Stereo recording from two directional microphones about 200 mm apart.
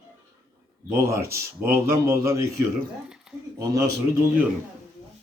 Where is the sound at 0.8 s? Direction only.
15° right (ahead or behind).